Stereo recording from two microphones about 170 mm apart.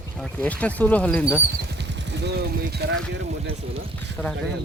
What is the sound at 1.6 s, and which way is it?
Speech, 85° right.